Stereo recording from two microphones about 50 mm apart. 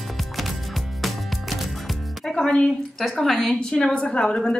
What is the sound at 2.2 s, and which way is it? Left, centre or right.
Speech, centre.